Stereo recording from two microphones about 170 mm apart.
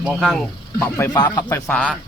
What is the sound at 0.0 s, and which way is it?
Speech, 5° right (ahead or behind).